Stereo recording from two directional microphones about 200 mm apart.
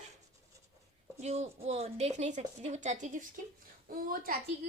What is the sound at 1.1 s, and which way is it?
A woman's voice, 35° right (ahead or behind).